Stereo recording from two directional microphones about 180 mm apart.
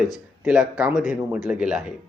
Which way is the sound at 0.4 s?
5° right (ahead or behind).